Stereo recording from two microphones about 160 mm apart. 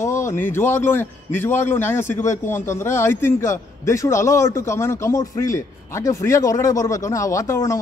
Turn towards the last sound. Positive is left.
turn(degrees=20)  # may be behind; listen again after turning